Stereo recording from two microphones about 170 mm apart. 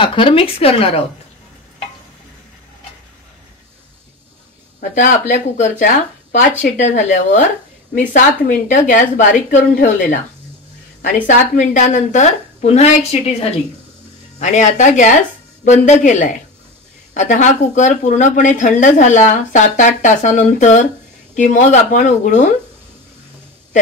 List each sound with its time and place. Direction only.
0.0 s a woman's voice: 30° left (ahead or behind)
4.7 s speech: 50° left (ahead or behind)
7.9 s speech: 50° left (ahead or behind)